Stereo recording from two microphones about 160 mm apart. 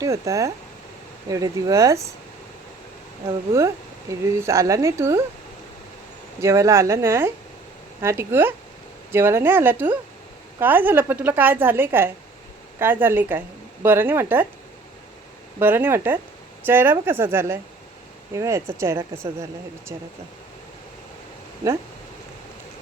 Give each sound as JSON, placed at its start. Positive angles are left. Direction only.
{"t": 0.0, "sound": "speech", "side_deg": -20}
{"t": 4.1, "sound": "speech", "side_deg": -20}
{"t": 6.4, "sound": "a woman's voice", "side_deg": -20}
{"t": 15.5, "sound": "a woman's voice", "side_deg": -15}